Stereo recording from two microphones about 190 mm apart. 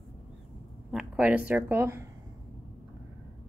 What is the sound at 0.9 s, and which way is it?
Speech, 5° right (ahead or behind).